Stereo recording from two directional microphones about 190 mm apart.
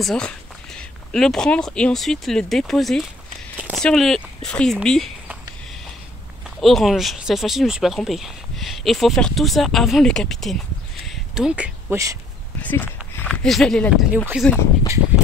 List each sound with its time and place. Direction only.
0.0 s speech: 5° left (ahead or behind)
3.5 s a sound: 5° right (ahead or behind)
3.8 s speech: centre (ahead or behind)
6.6 s speech: centre (ahead or behind)
12.6 s speech: 10° left (ahead or behind)
14.1 s speech: 10° right (ahead or behind)
14.4 s speech: 5° left (ahead or behind)